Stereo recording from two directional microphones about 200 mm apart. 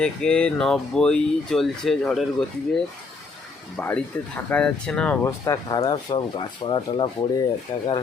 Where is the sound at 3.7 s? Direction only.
10° left (ahead or behind); by 7.1 s 25° left (ahead or behind).